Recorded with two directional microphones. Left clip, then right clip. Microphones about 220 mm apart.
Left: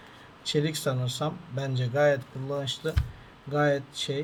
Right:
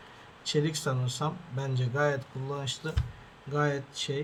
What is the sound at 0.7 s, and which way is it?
Speech, 65° right (ahead or behind).